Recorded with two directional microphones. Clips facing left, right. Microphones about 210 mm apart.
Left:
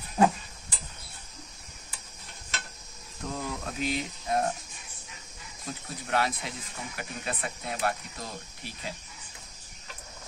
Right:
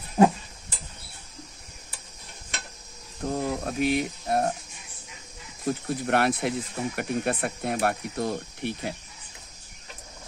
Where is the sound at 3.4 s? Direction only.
55° right (ahead or behind).